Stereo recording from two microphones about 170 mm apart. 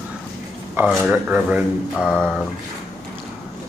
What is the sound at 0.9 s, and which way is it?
Speech, centre (ahead or behind).